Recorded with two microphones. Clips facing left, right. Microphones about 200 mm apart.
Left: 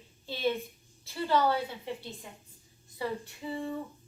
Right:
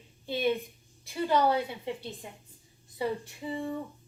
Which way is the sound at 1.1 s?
15° right (ahead or behind).